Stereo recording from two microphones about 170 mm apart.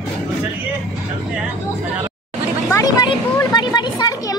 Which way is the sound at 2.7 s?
20° left (ahead or behind).